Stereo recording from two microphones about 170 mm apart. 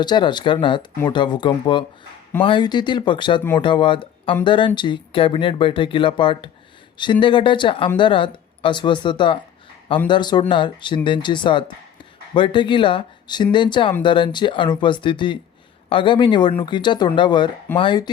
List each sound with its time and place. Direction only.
0.0 s speech: 25° left (ahead or behind)